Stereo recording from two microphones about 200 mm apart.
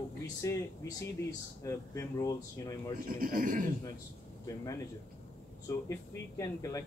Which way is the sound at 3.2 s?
45° right (ahead or behind).